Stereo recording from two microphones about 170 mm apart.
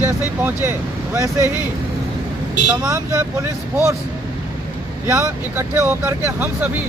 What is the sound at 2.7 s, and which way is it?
Speech, 20° right (ahead or behind).